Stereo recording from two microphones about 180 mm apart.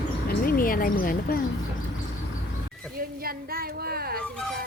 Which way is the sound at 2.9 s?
55° right (ahead or behind).